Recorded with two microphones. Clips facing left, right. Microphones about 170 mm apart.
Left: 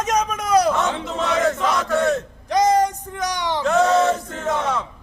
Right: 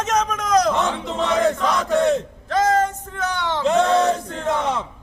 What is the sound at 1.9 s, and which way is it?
Battle cry, 15° right (ahead or behind).